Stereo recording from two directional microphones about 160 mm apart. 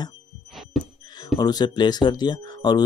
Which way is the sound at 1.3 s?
25° left (ahead or behind).